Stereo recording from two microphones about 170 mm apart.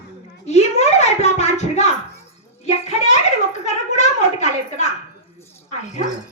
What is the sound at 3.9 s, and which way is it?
Speech, 45° left (ahead or behind).